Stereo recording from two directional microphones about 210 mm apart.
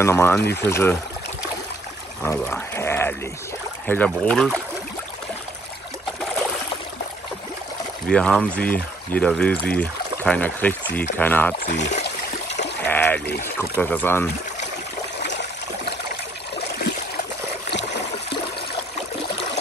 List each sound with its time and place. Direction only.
0.0 s speech: 10° left (ahead or behind)
2.2 s speech: 10° left (ahead or behind)
8.1 s speech: 5° left (ahead or behind)
11.7 s speech: 35° left (ahead or behind)
12.8 s a sound: 10° left (ahead or behind)
13.4 s speech: 10° left (ahead or behind)
17.6 s a sound: 55° left (ahead or behind)